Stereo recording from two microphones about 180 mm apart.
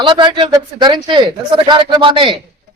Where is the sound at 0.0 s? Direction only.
25° right (ahead or behind).